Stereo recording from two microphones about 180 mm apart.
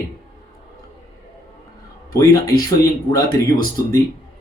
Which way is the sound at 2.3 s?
20° left (ahead or behind).